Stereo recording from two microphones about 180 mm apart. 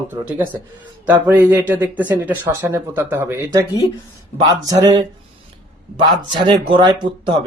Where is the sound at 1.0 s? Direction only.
10° right (ahead or behind).